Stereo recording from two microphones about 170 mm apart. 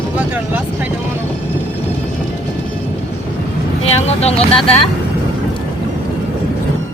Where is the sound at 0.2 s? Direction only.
10° right (ahead or behind).